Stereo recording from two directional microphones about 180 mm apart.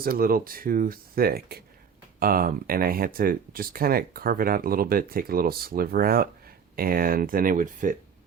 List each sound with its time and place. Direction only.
0.0 s speech: 55° right (ahead or behind)